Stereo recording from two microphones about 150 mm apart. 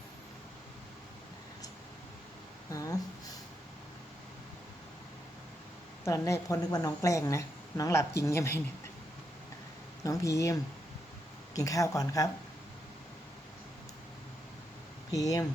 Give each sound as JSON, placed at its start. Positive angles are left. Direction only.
{"t": 2.6, "sound": "a sound", "side_deg": 20}
{"t": 6.1, "sound": "speech", "side_deg": 20}
{"t": 10.0, "sound": "speech", "side_deg": 20}
{"t": 15.1, "sound": "speech", "side_deg": 25}